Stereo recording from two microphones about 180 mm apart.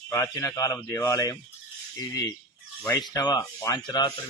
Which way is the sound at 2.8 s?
20° left (ahead or behind).